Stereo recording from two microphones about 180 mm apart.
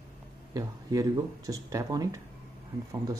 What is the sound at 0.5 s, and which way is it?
Speech, 20° right (ahead or behind).